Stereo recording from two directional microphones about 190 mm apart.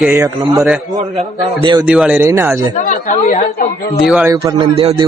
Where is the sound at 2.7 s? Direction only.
40° left (ahead or behind).